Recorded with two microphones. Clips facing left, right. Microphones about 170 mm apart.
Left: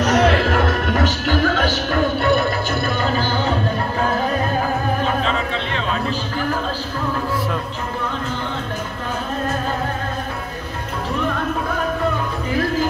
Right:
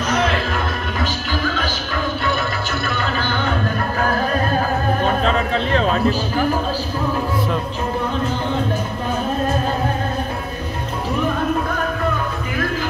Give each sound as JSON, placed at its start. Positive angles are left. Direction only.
{"t": 0.0, "sound": "music", "side_deg": 70}
{"t": 2.8, "sound": "music", "side_deg": 45}
{"t": 5.2, "sound": "a sound", "side_deg": -40}